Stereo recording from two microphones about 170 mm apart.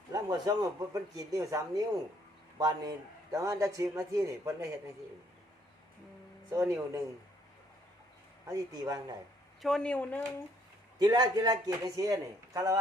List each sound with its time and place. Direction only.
0.1 s a man's voice: 20° right (ahead or behind)
6.5 s a man's voice: 20° right (ahead or behind)
8.4 s a man's voice: 20° right (ahead or behind)
9.6 s speech: centre (ahead or behind)
10.9 s a man's voice: 25° right (ahead or behind)